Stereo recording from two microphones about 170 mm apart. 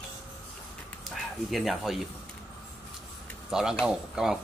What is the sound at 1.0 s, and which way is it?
Speech, centre (ahead or behind).